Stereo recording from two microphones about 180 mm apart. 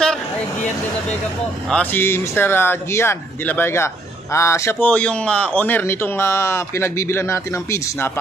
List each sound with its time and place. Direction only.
1.7 s speech: 10° left (ahead or behind)